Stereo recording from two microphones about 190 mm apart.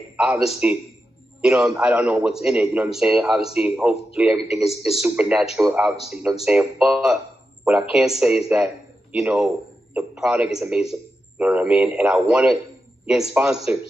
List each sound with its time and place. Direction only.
0.1 s a man's voice: centre (ahead or behind)
9.9 s a man's voice: 5° right (ahead or behind)